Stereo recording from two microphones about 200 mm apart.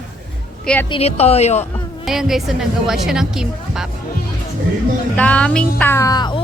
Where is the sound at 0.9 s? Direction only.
30° left (ahead or behind).